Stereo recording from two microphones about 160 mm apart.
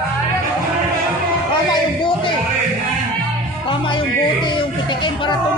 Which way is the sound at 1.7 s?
30° left (ahead or behind).